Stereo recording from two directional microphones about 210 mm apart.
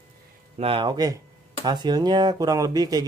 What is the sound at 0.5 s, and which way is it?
Speech, 25° right (ahead or behind).